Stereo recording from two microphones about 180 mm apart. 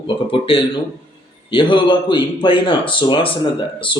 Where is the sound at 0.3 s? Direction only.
30° left (ahead or behind).